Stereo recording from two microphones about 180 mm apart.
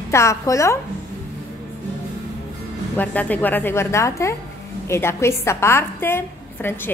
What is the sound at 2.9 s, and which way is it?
A woman's voice, 10° left (ahead or behind).